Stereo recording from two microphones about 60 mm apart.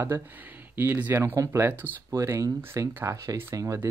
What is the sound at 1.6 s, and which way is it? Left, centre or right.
Speech, right.